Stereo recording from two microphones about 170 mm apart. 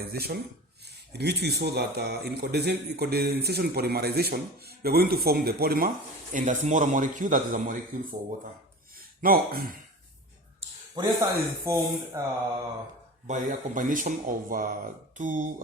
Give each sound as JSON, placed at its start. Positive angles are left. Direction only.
{"t": 0.0, "sound": "speech", "side_deg": -65}
{"t": 6.3, "sound": "speech", "side_deg": -50}
{"t": 9.2, "sound": "speech", "side_deg": -60}
{"t": 10.9, "sound": "speech", "side_deg": -20}
{"t": 13.2, "sound": "speech", "side_deg": -45}